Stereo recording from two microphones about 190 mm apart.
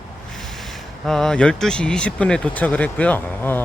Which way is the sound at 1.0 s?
Centre (ahead or behind).